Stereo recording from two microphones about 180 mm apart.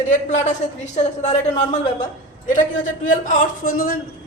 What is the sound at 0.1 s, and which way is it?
Speech, 40° left (ahead or behind).